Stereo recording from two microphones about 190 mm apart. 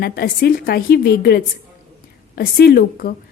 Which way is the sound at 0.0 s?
55° left (ahead or behind).